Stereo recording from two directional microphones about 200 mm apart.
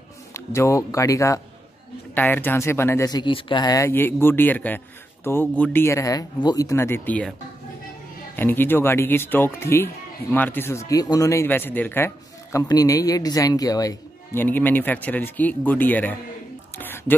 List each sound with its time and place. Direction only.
0.3 s speech: 15° left (ahead or behind)
8.4 s speech: 10° left (ahead or behind)
16.7 s whispering: 10° left (ahead or behind)